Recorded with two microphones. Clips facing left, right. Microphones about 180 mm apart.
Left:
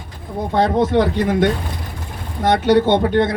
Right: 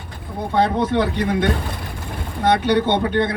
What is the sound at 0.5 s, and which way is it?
Speech, 40° left (ahead or behind).